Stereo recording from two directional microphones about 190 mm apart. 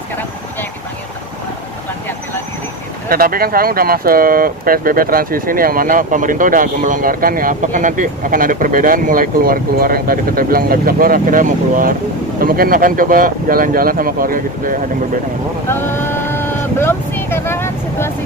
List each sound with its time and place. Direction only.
3.1 s speech: 50° right (ahead or behind)
15.7 s vehicle: 10° left (ahead or behind)